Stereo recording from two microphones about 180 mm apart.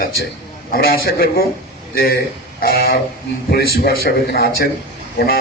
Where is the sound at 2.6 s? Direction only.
60° left (ahead or behind).